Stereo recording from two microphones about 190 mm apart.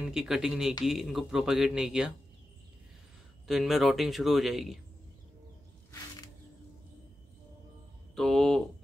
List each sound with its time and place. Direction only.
0.0 s speech: 5° right (ahead or behind)
3.4 s speech: centre (ahead or behind)
5.9 s music: 20° left (ahead or behind)
8.2 s speech: 5° left (ahead or behind)